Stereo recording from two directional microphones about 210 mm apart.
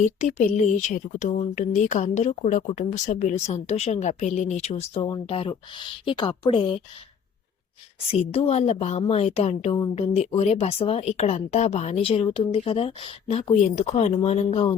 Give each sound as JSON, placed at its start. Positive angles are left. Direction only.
{"t": 0.0, "sound": "speech", "side_deg": 35}
{"t": 8.1, "sound": "a woman's voice", "side_deg": 30}